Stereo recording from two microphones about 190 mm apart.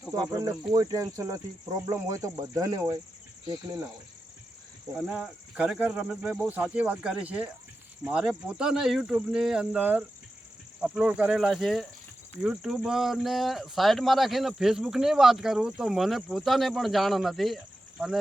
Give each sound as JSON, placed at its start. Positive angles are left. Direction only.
{"t": 0.1, "sound": "speech", "side_deg": -20}
{"t": 4.9, "sound": "speech", "side_deg": -5}